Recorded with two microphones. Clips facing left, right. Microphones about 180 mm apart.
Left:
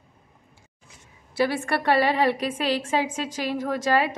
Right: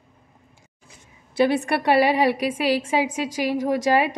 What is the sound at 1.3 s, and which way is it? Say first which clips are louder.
A woman's voice: right 4 dB; 20° right (ahead or behind).